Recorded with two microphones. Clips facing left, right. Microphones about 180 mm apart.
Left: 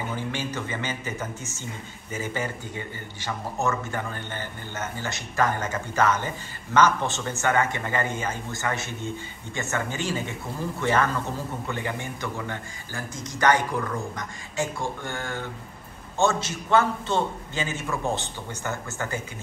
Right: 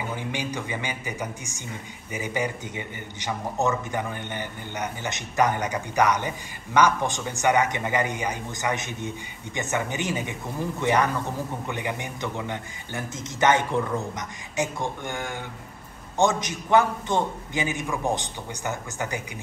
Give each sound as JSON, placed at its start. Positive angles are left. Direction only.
{"t": 0.1, "sound": "a man's voice", "side_deg": -15}